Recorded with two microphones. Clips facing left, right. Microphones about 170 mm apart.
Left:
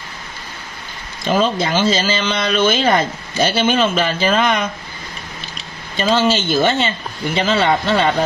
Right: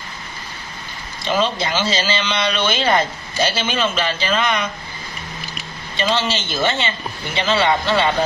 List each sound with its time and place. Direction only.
1.2 s speech: 50° left (ahead or behind)
5.9 s speech: 50° left (ahead or behind)